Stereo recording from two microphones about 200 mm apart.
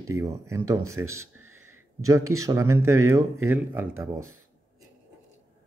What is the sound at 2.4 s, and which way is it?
Speech, 15° right (ahead or behind).